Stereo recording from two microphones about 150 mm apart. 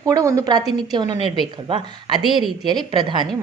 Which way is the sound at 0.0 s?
25° right (ahead or behind).